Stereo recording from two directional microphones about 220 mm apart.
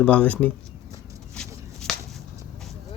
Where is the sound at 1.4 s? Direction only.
5° left (ahead or behind).